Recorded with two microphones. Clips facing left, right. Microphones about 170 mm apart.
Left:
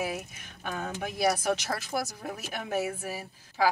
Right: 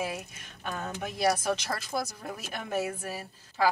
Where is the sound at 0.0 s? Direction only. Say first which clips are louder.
Left 1 dB; 5° left (ahead or behind).